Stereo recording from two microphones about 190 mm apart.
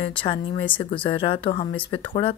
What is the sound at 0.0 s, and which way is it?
A woman's voice, 25° left (ahead or behind).